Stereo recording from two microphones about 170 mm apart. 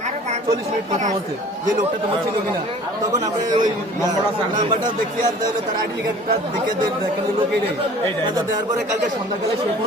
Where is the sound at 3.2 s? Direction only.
20° right (ahead or behind).